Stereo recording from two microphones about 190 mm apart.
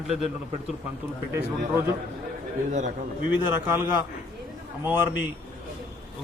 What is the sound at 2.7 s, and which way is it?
Speech, 40° right (ahead or behind).